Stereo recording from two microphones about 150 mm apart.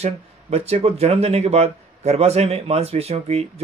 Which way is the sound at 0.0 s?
45° right (ahead or behind).